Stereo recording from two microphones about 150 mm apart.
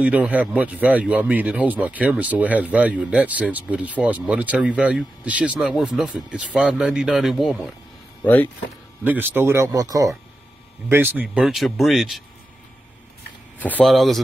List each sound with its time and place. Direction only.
0.0 s speech: 10° right (ahead or behind)
8.2 s speech: 10° left (ahead or behind)
9.0 s speech: 10° right (ahead or behind)
11.2 s speech: centre (ahead or behind)
13.6 s speech: 10° left (ahead or behind)